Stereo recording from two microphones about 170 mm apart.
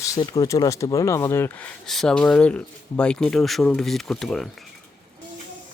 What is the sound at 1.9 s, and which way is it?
Speech, 5° left (ahead or behind).